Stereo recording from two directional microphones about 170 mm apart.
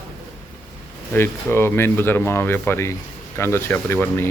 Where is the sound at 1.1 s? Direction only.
10° left (ahead or behind).